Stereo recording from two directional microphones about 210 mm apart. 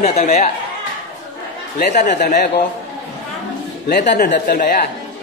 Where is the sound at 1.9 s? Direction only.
35° left (ahead or behind).